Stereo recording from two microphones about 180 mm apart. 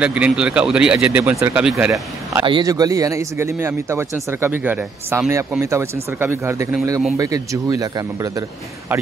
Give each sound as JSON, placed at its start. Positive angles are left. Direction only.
{"t": 0.0, "sound": "speech", "side_deg": -5}
{"t": 2.4, "sound": "speech", "side_deg": -20}